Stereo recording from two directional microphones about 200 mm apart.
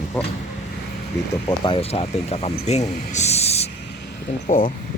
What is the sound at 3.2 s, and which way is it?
Speech, 30° left (ahead or behind).